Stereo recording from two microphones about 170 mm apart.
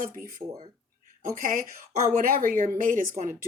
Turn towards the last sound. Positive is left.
turn(degrees=-55)  # may be behind; listen again after turning